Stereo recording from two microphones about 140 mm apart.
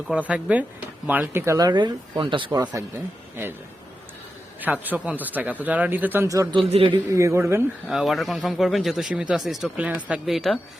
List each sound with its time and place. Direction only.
0.1 s speech: 10° right (ahead or behind); by 2.5 s 35° right (ahead or behind)
2.5 s speech: 25° right (ahead or behind)
4.6 s speech: 10° right (ahead or behind)
6.5 s speech: 40° right (ahead or behind)
7.1 s speech: 20° right (ahead or behind)
7.9 s speech: centre (ahead or behind)